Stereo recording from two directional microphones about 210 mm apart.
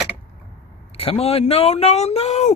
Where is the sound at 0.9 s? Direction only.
30° left (ahead or behind).